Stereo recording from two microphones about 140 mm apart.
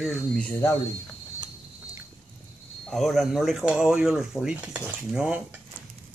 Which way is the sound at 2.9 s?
Centre (ahead or behind).